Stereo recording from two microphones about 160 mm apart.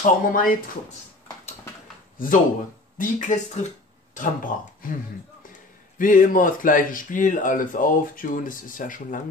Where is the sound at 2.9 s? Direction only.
50° left (ahead or behind).